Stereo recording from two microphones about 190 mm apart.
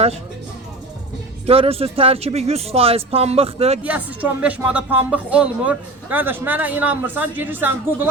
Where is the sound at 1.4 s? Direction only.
30° right (ahead or behind).